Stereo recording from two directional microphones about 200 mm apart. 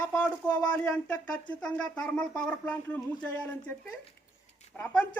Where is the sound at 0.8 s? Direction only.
5° left (ahead or behind).